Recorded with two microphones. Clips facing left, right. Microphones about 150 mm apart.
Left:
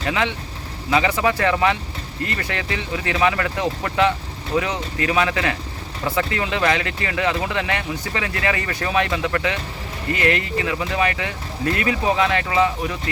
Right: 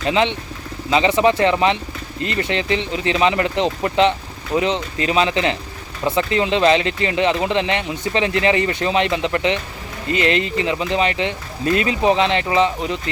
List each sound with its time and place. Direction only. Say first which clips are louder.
0.0 s speech: right 4 dB; 20° right (ahead or behind)